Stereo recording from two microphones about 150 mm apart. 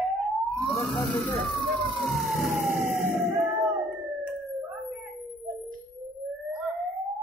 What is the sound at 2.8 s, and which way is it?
Fire engine, 55° right (ahead or behind).